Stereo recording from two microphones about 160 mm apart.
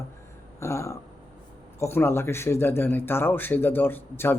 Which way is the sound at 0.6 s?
20° left (ahead or behind).